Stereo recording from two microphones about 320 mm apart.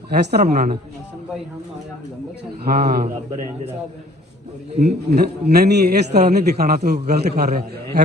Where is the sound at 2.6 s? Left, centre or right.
Right.